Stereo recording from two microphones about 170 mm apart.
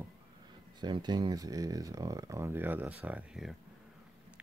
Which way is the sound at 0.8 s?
25° right (ahead or behind).